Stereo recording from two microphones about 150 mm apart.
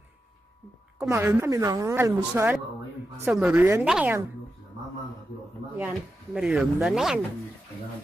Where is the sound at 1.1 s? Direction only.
15° right (ahead or behind).